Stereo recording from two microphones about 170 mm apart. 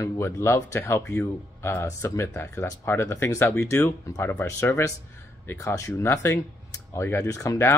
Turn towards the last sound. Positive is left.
turn(degrees=20)  # may be behind; listen again after turning